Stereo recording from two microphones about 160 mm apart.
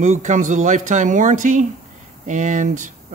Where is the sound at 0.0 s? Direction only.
50° right (ahead or behind).